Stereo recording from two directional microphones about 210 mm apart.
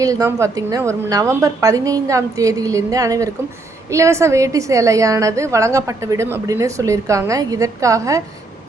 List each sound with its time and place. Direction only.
0.0 s a woman's voice: 15° right (ahead or behind)